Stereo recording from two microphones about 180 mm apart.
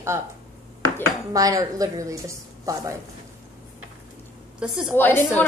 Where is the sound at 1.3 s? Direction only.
20° right (ahead or behind).